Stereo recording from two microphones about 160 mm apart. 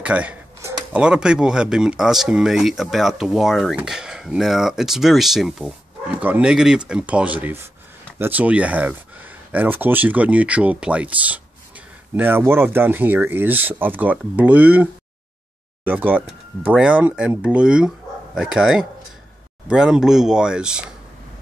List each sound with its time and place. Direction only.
0.0 s speech: 10° right (ahead or behind)
0.6 s a sound: 15° right (ahead or behind)
1.0 s speech: 5° right (ahead or behind)